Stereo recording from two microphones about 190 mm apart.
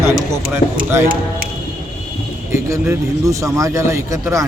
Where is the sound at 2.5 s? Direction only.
15° right (ahead or behind).